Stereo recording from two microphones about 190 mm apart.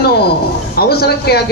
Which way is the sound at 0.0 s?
55° left (ahead or behind).